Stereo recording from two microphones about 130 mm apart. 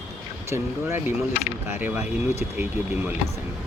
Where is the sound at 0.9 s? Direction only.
90° left.